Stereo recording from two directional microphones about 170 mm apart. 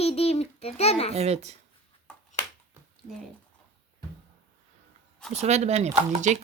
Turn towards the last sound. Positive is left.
turn(degrees=-40)  # may be behind; listen again after turning